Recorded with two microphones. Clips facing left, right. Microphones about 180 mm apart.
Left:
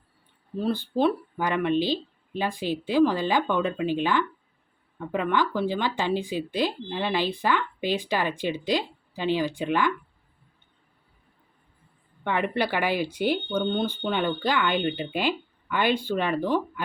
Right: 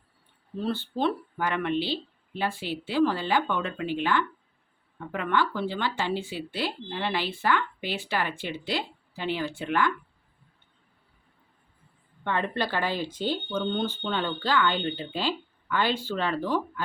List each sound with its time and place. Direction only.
0.5 s speech: 10° left (ahead or behind)
12.2 s speech: 15° left (ahead or behind)